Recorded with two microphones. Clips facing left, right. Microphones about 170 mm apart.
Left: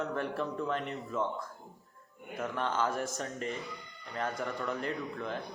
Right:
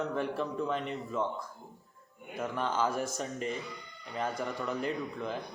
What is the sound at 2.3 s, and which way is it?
Speech, centre (ahead or behind).